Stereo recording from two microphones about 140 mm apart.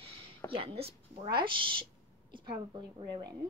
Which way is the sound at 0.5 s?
45° right (ahead or behind).